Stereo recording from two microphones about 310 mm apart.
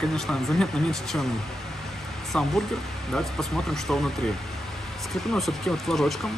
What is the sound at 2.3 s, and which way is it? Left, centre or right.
Speech, centre.